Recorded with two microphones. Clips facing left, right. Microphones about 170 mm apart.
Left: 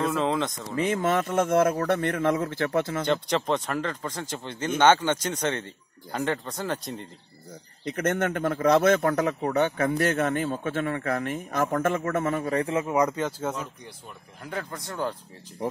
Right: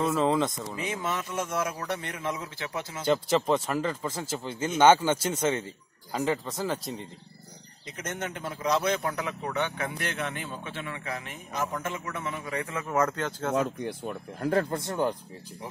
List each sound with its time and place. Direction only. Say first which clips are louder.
0.0 s speech: right 1 dB; 5° right (ahead or behind)
0.7 s speech: left 10 dB; 55° left (ahead or behind)
3.1 s speech: right 1 dB; 5° right (ahead or behind)
7.8 s speech: left 10 dB; 60° left (ahead or behind); by 12.8 s 35° left (ahead or behind)
12.8 s speech: left 3 dB; 15° left (ahead or behind)
13.8 s speech: right 11 dB; 55° right (ahead or behind)
14.5 s speech: right 7 dB; 40° right (ahead or behind)
14.8 s speech: right 3 dB; 20° right (ahead or behind)